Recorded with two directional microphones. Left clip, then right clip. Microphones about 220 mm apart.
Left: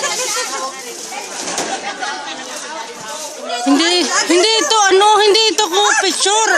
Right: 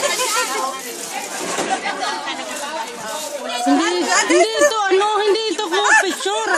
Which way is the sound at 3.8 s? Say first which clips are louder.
Left 3 dB; 25° left (ahead or behind).